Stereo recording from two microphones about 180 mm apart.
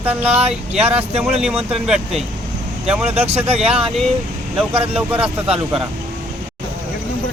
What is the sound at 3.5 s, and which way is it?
Speech, 35° right (ahead or behind).